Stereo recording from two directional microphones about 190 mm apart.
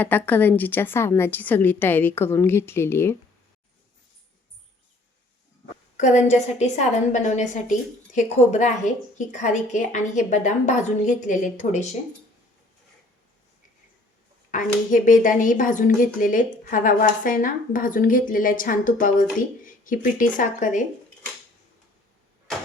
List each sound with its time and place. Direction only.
0.0 s a woman's voice: 10° left (ahead or behind)
6.0 s a woman's voice: 40° left (ahead or behind)
14.5 s speech: 45° left (ahead or behind)